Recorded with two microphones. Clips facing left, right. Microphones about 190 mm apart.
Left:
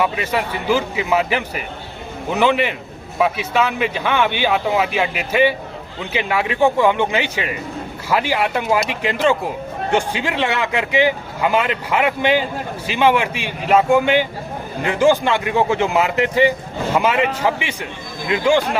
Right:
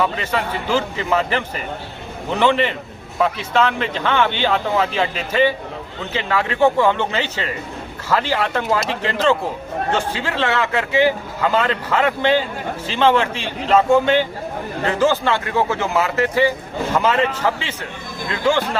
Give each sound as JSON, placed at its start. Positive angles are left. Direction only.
{"t": 0.0, "sound": "a man's voice", "side_deg": 10}